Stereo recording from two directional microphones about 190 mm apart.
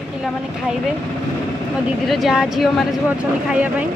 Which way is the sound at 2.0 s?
Centre (ahead or behind).